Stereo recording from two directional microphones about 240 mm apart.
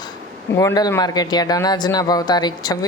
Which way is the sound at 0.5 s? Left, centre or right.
Centre.